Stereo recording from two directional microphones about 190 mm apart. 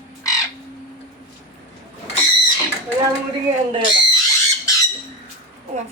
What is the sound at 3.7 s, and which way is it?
Speech, 25° right (ahead or behind).